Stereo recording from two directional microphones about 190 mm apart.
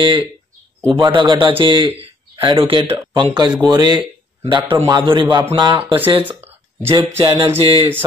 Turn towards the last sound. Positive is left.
turn(degrees=-30)  # may be behind; listen again after turning